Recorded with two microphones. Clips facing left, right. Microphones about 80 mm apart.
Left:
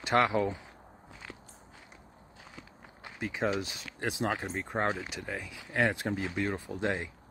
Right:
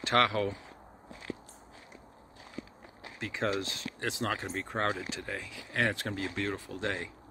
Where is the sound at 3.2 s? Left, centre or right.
Centre.